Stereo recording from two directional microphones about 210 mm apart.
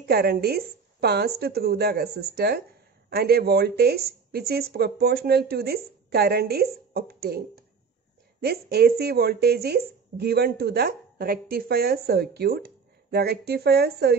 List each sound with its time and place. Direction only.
0.1 s speech: 50° right (ahead or behind)